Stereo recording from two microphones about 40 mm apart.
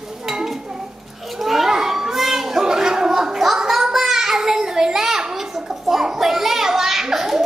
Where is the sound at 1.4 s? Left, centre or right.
Centre.